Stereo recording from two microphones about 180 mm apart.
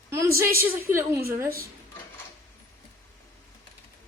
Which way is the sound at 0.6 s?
15° right (ahead or behind).